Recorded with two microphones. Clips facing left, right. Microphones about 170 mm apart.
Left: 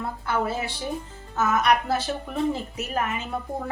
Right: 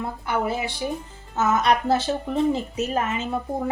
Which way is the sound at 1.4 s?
25° right (ahead or behind).